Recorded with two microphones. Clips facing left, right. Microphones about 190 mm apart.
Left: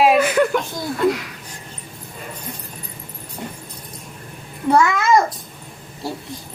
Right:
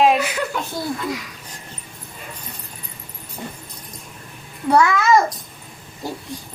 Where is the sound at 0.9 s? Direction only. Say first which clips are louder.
Left 8 dB; 65° left (ahead or behind).